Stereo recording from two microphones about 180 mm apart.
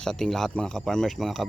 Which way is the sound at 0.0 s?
5° left (ahead or behind).